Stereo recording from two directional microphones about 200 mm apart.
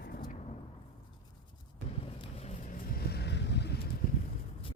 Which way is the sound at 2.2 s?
30° left (ahead or behind).